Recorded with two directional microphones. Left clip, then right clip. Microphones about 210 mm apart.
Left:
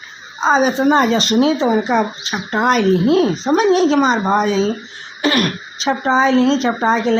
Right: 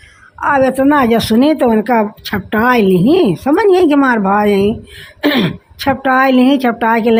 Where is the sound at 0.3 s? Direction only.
50° right (ahead or behind).